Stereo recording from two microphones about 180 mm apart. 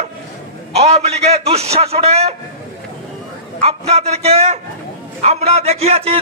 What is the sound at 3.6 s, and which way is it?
A man's voice, 35° right (ahead or behind).